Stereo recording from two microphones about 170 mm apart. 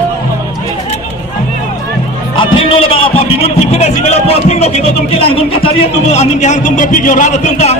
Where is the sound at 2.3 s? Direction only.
35° left (ahead or behind).